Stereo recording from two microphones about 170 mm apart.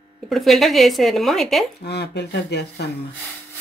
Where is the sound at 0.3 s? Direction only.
Centre (ahead or behind).